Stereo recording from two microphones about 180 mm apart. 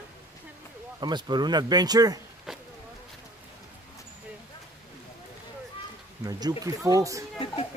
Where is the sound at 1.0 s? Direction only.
25° right (ahead or behind).